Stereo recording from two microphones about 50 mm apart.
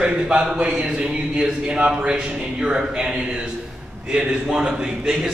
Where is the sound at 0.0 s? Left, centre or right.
Right.